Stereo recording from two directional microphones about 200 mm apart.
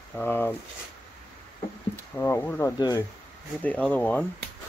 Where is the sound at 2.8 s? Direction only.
20° left (ahead or behind).